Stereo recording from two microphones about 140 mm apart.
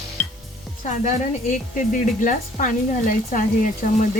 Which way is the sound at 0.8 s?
60° left (ahead or behind).